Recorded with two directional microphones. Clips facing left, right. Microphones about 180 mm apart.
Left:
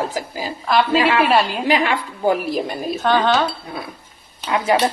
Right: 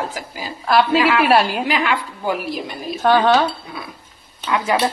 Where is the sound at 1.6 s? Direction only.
35° left (ahead or behind).